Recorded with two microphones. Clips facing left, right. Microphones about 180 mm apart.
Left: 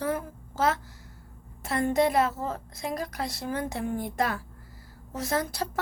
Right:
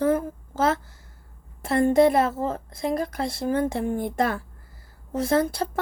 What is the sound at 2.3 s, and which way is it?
Speech, 50° right (ahead or behind).